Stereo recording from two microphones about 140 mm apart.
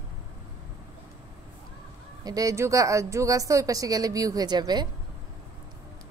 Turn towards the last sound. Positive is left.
turn(degrees=-30)  # may be behind; listen again after turning